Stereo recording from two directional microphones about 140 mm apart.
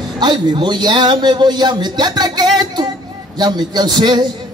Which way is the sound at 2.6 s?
30° right (ahead or behind).